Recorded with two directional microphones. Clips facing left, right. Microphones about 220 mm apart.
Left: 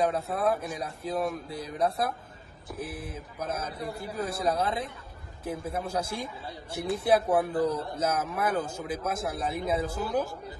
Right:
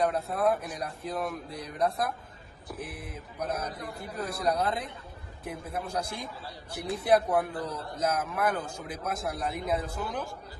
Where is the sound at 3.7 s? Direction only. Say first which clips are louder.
Left 3 dB; 5° left (ahead or behind).